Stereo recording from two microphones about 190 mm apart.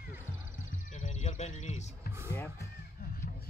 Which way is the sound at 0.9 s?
35° left (ahead or behind).